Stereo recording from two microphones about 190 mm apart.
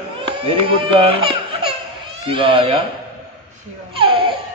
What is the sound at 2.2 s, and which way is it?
Speech, 30° right (ahead or behind).